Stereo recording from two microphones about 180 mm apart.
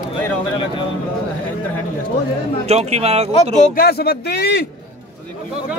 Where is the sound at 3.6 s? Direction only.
60° left (ahead or behind).